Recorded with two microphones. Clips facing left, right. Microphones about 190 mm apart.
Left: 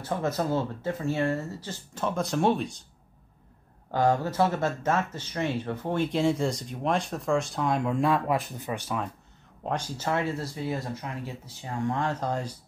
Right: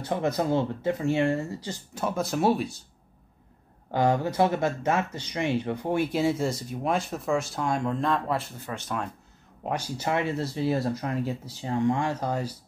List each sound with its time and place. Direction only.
0.0 s speech: 20° right (ahead or behind)
3.9 s speech: 15° right (ahead or behind); by 8.9 s 15° left (ahead or behind)
9.6 s speech: 10° right (ahead or behind); by 11.7 s 35° right (ahead or behind)
11.9 s speech: 10° right (ahead or behind)